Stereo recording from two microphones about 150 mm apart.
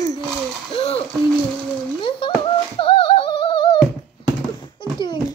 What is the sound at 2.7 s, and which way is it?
Singing, 35° left (ahead or behind).